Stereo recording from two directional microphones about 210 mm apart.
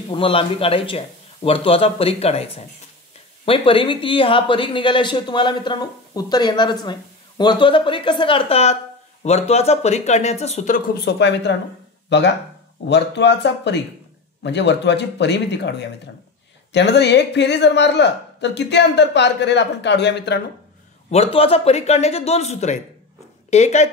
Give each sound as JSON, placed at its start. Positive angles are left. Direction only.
{"t": 0.1, "sound": "speech", "side_deg": 25}
{"t": 11.0, "sound": "speech", "side_deg": 55}
{"t": 21.1, "sound": "speech", "side_deg": 30}